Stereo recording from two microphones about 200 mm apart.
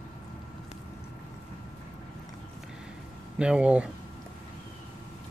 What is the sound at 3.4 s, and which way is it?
Speech, 5° right (ahead or behind).